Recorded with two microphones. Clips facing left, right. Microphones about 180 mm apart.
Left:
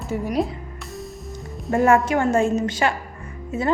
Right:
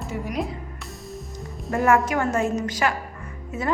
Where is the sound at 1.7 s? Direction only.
25° left (ahead or behind).